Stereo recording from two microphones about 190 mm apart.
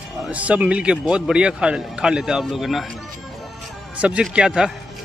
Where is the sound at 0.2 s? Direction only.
5° right (ahead or behind).